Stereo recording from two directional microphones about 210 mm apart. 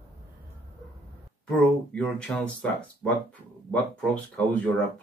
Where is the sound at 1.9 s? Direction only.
5° left (ahead or behind).